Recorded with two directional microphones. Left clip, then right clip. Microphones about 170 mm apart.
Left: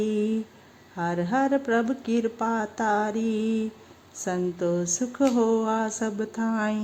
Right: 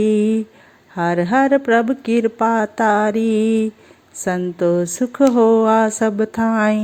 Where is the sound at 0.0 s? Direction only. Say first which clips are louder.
Right 10 dB; 25° right (ahead or behind).